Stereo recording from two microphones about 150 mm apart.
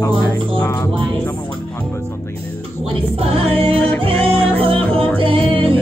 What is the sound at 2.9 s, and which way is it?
Music, 40° right (ahead or behind).